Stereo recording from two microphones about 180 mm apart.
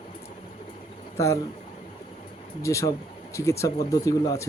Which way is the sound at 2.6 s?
15° left (ahead or behind).